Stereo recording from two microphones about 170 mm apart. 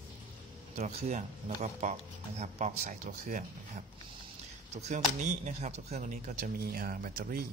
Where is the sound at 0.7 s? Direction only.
40° right (ahead or behind).